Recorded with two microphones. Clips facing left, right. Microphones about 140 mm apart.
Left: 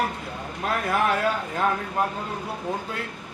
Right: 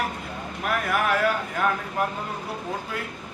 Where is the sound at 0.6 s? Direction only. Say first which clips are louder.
Left 1 dB; 25° left (ahead or behind).